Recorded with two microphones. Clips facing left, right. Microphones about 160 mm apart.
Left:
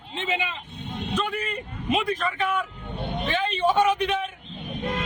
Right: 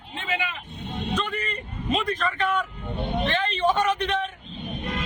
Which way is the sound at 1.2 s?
10° left (ahead or behind).